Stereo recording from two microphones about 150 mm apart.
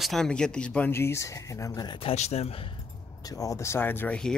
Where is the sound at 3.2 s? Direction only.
25° left (ahead or behind).